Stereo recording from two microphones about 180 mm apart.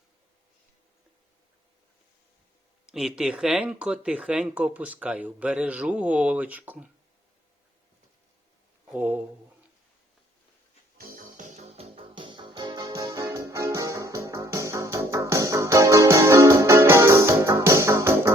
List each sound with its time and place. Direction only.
2.8 s speech: 5° right (ahead or behind)
8.9 s speech: 10° right (ahead or behind)
10.9 s music: 50° right (ahead or behind); by 18.3 s 15° right (ahead or behind)